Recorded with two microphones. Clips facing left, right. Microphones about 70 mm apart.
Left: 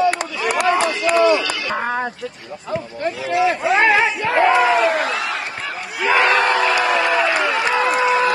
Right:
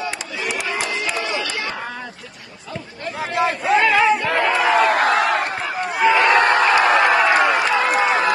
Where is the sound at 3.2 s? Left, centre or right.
Right.